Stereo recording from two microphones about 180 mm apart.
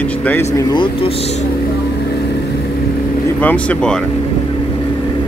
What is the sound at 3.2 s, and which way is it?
Speech, 10° left (ahead or behind).